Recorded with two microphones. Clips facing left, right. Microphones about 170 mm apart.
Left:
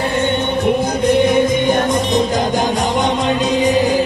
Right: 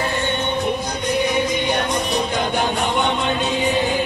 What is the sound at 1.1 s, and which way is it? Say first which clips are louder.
Music: left 6 dB; 50° left (ahead or behind).